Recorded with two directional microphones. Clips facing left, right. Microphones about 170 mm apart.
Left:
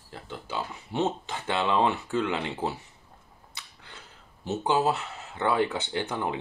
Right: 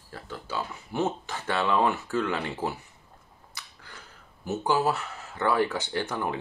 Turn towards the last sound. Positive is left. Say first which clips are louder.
# even
turn(degrees=20)  # may be behind; listen again after turning